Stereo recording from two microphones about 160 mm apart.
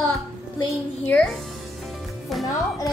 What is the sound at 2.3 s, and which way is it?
Speech, centre (ahead or behind).